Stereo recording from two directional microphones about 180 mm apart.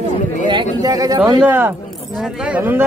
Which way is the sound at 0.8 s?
20° right (ahead or behind).